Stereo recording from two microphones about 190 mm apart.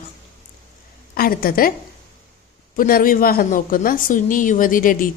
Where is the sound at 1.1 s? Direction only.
50° left (ahead or behind).